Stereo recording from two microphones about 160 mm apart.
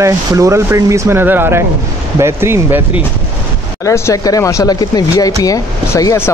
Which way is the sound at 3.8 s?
20° left (ahead or behind).